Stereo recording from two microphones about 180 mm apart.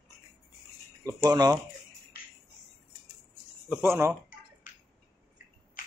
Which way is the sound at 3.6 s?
10° right (ahead or behind).